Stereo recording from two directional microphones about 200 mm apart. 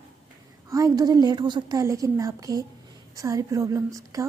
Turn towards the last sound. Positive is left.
turn(degrees=-15)  # may be behind; listen again after turning